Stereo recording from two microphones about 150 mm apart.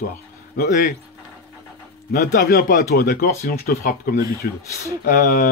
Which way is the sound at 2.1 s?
80° left.